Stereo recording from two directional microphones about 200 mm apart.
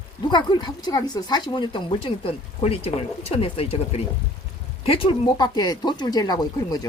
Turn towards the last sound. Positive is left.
turn(degrees=20)  # may be behind; listen again after turning